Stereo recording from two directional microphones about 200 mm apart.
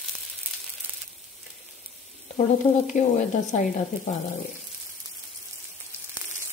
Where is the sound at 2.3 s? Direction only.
35° left (ahead or behind).